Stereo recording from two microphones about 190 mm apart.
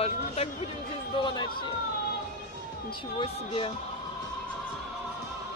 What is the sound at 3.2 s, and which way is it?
Speech, 30° left (ahead or behind).